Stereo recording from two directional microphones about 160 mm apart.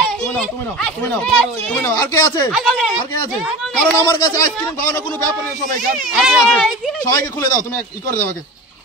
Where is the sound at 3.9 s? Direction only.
20° left (ahead or behind).